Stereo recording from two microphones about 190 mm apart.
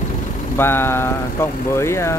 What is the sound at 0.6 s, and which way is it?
Speech, 10° left (ahead or behind).